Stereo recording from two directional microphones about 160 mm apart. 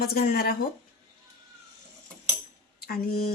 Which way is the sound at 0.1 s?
70° left (ahead or behind).